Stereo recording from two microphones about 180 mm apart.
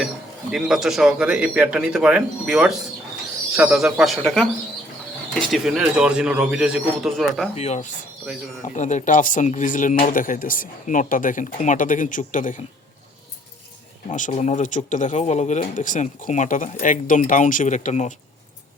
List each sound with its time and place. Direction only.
0.5 s a man's voice: centre (ahead or behind)
7.5 s speech: 40° left (ahead or behind)
14.1 s speech: 40° left (ahead or behind)